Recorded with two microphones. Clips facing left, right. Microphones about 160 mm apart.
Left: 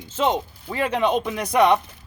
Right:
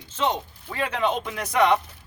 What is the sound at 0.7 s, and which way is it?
Speech, 20° left (ahead or behind).